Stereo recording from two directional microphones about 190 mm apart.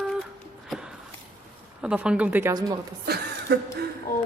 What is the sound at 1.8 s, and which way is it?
Speech, 5° right (ahead or behind).